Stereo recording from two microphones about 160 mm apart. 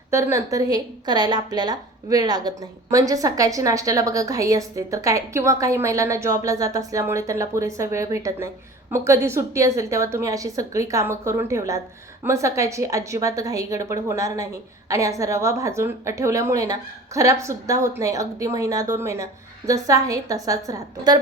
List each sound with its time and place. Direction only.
0.1 s a woman's voice: 15° right (ahead or behind)